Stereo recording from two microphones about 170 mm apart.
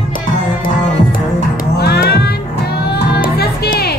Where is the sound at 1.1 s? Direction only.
65° left (ahead or behind).